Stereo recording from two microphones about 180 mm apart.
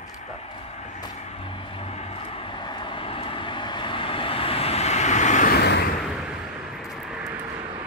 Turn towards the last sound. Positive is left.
turn(degrees=65)  # may be behind; listen again after turning